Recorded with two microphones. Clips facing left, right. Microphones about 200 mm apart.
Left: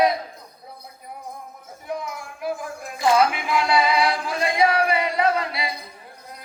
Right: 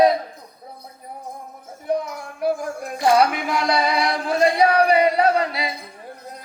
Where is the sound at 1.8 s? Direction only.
40° right (ahead or behind).